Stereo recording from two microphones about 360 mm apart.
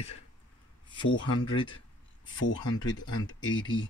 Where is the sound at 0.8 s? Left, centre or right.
Centre.